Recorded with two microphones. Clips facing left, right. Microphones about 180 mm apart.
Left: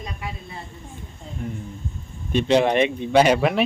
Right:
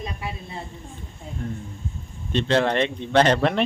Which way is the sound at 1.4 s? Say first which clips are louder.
Left 1 dB; 10° left (ahead or behind).